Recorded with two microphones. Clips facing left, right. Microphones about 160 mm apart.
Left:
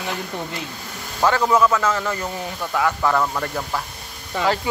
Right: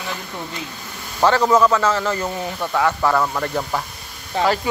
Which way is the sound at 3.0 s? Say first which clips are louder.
Right 1 dB; 10° right (ahead or behind).